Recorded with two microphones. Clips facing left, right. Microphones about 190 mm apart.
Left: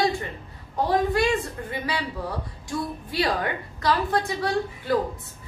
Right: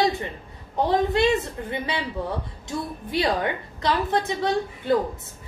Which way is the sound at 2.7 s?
20° right (ahead or behind).